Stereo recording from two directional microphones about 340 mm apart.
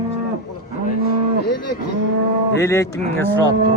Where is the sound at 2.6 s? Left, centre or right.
Centre.